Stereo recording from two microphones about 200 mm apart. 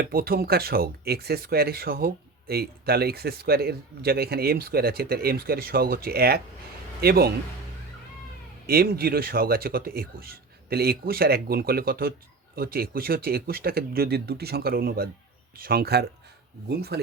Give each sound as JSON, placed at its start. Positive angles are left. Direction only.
{"t": 0.0, "sound": "speech", "side_deg": -50}
{"t": 8.6, "sound": "speech", "side_deg": -50}